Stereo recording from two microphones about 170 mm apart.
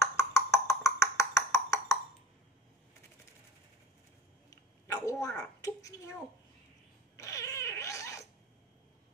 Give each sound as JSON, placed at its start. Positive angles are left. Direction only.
{"t": 0.0, "sound": "wood block", "side_deg": 20}
{"t": 4.5, "sound": "a sound", "side_deg": 20}
{"t": 5.4, "sound": "a child's voice", "side_deg": 20}
{"t": 7.2, "sound": "cat", "side_deg": 20}